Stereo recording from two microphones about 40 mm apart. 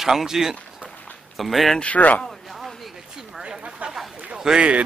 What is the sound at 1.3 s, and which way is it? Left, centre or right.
Speech, centre.